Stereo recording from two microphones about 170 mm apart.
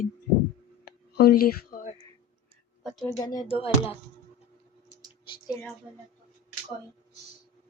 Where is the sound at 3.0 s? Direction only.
20° left (ahead or behind).